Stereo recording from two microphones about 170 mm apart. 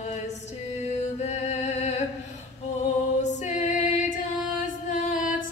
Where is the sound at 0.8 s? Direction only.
40° left (ahead or behind).